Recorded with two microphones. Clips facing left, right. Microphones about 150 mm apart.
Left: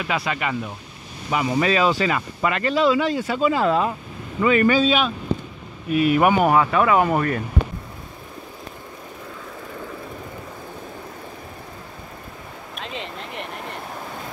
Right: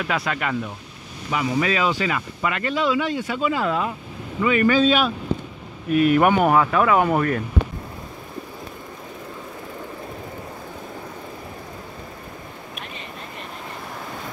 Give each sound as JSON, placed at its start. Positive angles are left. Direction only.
{"t": 0.0, "sound": "speech", "side_deg": 5}
{"t": 1.3, "sound": "speech", "side_deg": 30}
{"t": 4.7, "sound": "speech", "side_deg": 0}
{"t": 12.8, "sound": "a sound", "side_deg": 90}